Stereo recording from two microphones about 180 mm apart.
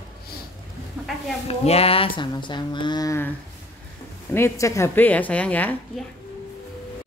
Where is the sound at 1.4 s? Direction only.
35° left (ahead or behind); by 3.3 s 15° left (ahead or behind).